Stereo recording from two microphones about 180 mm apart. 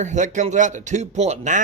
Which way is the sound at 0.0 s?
40° right (ahead or behind).